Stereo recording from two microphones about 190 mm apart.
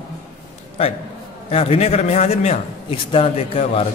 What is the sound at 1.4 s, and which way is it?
A man's voice, 30° left (ahead or behind).